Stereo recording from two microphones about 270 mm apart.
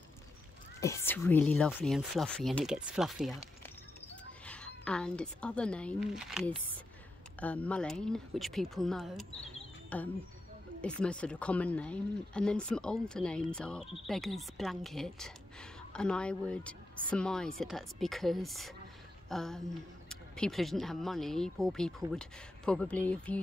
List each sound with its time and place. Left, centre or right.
0.7 s speech: centre